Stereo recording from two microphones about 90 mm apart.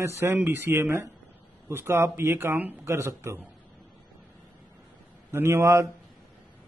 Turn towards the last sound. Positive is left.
turn(degrees=-35)  # may be behind; listen again after turning